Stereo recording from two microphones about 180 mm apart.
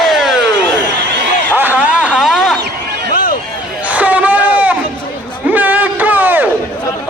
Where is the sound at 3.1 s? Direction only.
50° left (ahead or behind).